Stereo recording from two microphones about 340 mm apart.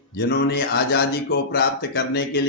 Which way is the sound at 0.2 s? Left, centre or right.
Left.